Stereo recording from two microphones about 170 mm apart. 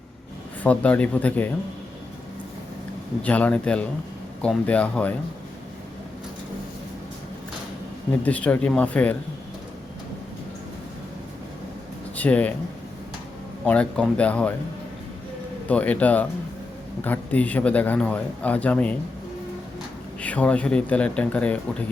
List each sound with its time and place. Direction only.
0.6 s a man's voice: 10° left (ahead or behind)
3.2 s a man's voice: 10° left (ahead or behind)
8.2 s a man's voice: 10° left (ahead or behind)
12.1 s speech: 10° left (ahead or behind)
13.7 s a man's voice: 5° left (ahead or behind)
15.6 s a man's voice: 10° left (ahead or behind)
20.2 s a man's voice: 10° left (ahead or behind)